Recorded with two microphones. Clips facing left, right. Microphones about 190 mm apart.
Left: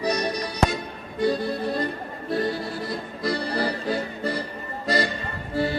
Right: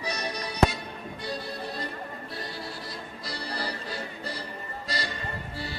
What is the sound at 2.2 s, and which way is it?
Accordion, 55° left (ahead or behind).